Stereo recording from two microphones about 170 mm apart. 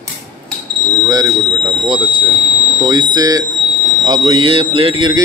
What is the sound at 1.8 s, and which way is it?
A man's voice, 25° right (ahead or behind).